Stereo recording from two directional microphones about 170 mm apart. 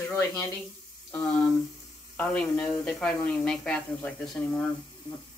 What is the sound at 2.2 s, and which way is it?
Speech, 5° left (ahead or behind).